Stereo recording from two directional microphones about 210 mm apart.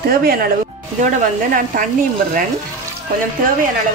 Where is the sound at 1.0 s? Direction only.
40° right (ahead or behind).